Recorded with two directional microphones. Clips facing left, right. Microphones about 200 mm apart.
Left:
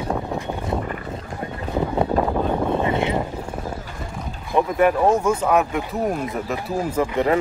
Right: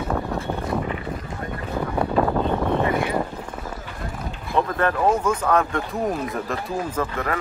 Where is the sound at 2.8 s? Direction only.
25° left (ahead or behind).